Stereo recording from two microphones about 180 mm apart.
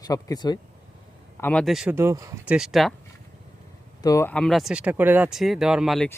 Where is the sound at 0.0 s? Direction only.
20° left (ahead or behind).